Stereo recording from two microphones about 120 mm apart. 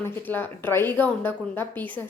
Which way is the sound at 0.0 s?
15° left (ahead or behind).